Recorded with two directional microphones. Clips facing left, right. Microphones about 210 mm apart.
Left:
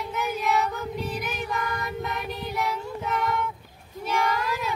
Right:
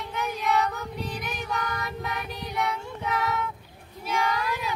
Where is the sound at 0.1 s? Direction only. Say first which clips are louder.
Even; 5° left (ahead or behind).